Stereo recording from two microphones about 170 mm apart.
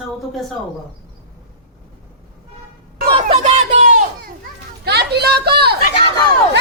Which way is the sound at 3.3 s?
40° right (ahead or behind).